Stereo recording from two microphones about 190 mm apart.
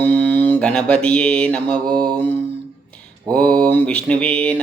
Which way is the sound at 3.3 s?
5° left (ahead or behind).